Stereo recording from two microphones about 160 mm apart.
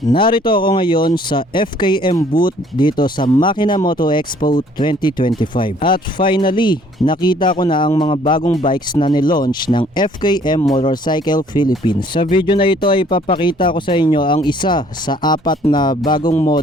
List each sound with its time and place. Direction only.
0.1 s speech: 30° left (ahead or behind)
4.4 s speech: 65° left (ahead or behind)
4.8 s speech: 30° left (ahead or behind)